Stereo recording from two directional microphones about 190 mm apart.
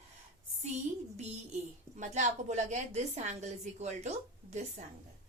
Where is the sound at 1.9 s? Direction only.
40° right (ahead or behind).